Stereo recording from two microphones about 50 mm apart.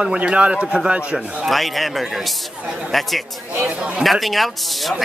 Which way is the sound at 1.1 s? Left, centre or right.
Centre.